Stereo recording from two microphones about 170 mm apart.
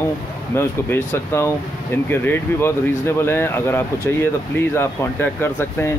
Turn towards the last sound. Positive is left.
turn(degrees=15)  # may be behind; listen again after turning